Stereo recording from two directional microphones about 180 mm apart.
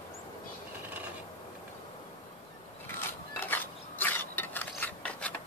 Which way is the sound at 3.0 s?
10° left (ahead or behind).